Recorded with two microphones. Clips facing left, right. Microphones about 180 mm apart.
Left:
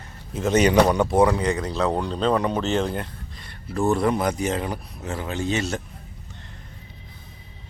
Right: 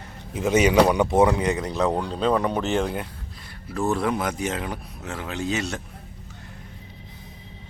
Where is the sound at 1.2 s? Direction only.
20° right (ahead or behind).